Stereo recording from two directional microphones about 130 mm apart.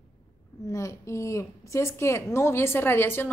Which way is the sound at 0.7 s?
25° left (ahead or behind).